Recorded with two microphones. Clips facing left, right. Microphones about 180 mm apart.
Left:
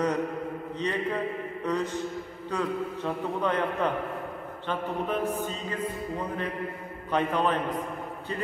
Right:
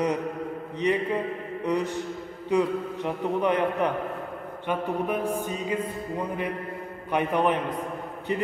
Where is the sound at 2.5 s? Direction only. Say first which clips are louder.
Right 5 dB; 15° right (ahead or behind).